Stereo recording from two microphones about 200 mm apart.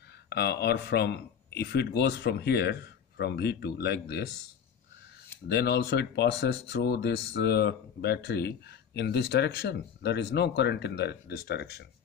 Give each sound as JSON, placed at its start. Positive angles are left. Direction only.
{"t": 0.3, "sound": "speech", "side_deg": 55}
{"t": 5.5, "sound": "speech", "side_deg": 55}